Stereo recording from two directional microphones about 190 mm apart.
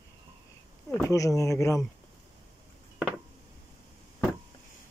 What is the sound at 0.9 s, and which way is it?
Speech, 15° left (ahead or behind).